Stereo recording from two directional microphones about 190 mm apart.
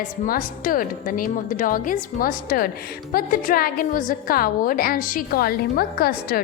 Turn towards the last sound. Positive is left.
turn(degrees=55)  # may be behind; listen again after turning